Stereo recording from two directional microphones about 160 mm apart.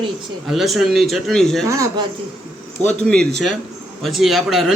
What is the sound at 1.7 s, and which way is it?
Speech, 20° right (ahead or behind).